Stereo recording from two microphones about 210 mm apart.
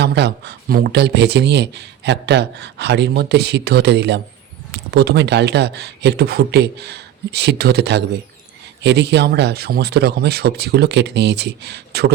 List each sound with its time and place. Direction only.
0.0 s speech: 55° right (ahead or behind)